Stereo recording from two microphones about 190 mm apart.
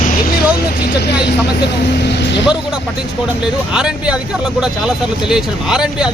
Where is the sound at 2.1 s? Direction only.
65° left (ahead or behind).